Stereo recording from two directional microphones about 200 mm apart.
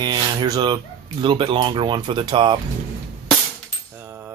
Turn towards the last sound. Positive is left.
turn(degrees=-10)  # may be behind; listen again after turning